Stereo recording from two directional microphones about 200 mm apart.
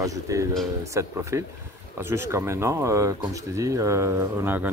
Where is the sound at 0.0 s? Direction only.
15° right (ahead or behind).